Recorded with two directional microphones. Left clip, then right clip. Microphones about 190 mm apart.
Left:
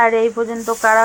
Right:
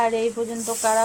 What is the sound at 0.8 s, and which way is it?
Frying, 20° left (ahead or behind).